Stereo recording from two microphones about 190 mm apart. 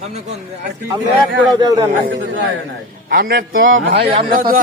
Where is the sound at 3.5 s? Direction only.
80° right.